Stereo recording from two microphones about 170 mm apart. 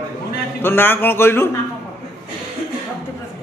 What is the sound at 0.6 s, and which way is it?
Speech, 10° left (ahead or behind).